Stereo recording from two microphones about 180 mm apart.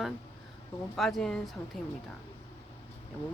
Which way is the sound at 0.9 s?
Centre (ahead or behind).